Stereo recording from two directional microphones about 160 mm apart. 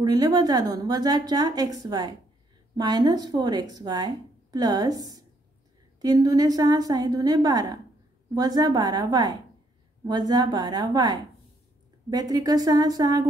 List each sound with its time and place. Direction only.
0.0 s speech: 25° right (ahead or behind)